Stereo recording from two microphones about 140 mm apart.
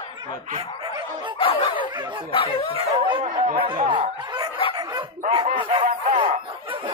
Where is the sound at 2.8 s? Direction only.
40° right (ahead or behind).